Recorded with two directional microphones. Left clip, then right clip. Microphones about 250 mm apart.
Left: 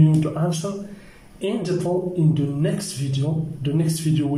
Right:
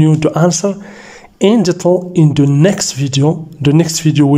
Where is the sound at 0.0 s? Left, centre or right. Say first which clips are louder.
Right 11 dB; right.